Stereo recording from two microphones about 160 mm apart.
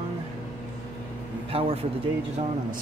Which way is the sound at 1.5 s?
35° right (ahead or behind).